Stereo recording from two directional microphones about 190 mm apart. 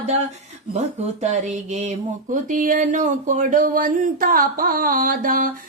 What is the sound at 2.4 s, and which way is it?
Speech, 45° right (ahead or behind).